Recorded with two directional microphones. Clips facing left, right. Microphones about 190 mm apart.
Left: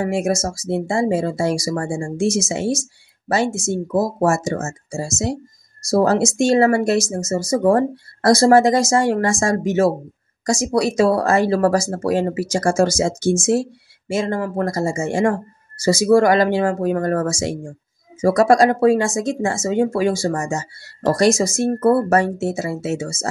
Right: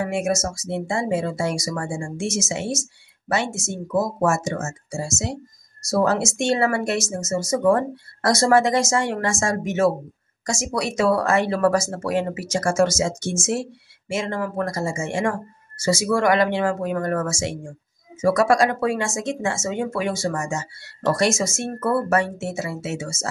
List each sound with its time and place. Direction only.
0.0 s speech: 35° left (ahead or behind)